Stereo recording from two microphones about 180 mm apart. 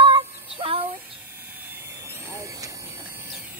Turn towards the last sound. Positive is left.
turn(degrees=-10)  # may be behind; listen again after turning